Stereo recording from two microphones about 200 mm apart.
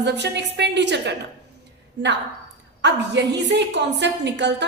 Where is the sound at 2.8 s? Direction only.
60° right (ahead or behind).